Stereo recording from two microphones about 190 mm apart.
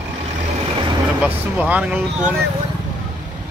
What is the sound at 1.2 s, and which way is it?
Speech, 5° right (ahead or behind).